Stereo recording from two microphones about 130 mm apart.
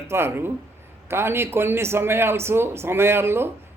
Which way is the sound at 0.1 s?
20° right (ahead or behind).